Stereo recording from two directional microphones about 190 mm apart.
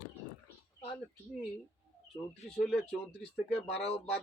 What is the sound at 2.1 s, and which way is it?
Speech, centre (ahead or behind).